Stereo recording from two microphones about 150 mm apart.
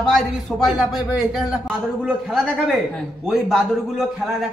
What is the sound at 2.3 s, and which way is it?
Speech, centre (ahead or behind).